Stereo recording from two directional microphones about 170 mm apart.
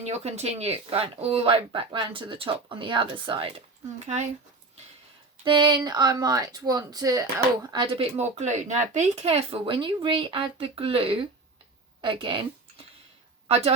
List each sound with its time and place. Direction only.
0.0 s speech: 40° right (ahead or behind)
4.0 s speech: 40° right (ahead or behind)
5.5 s speech: 25° right (ahead or behind)